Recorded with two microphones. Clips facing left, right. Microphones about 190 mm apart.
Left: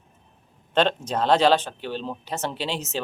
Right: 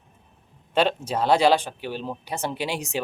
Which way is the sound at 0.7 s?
10° right (ahead or behind).